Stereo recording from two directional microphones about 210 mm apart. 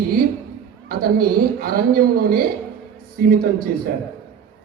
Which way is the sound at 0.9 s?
45° right (ahead or behind).